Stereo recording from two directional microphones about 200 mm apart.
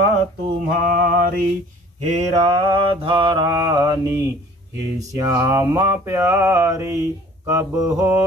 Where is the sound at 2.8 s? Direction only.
25° right (ahead or behind).